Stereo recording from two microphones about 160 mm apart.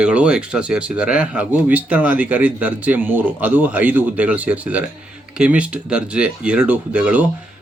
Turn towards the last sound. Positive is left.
turn(degrees=-10)  # may be behind; listen again after turning